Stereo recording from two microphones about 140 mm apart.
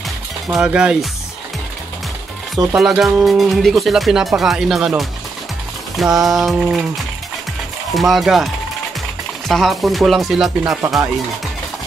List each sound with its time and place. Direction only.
0.5 s speech: 5° right (ahead or behind)
2.8 s speech: 5° right (ahead or behind)
7.9 s speech: centre (ahead or behind)
9.5 s speech: centre (ahead or behind)
10.6 s speech: 25° right (ahead or behind)